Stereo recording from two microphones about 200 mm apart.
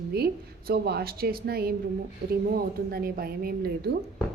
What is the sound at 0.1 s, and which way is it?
Speech, 50° right (ahead or behind).